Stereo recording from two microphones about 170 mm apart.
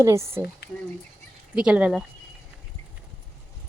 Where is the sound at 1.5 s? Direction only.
5° right (ahead or behind).